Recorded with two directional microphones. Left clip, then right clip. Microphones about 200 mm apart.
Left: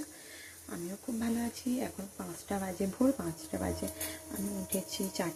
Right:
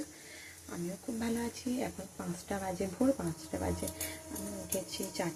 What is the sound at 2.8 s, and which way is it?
Speech, 10° left (ahead or behind).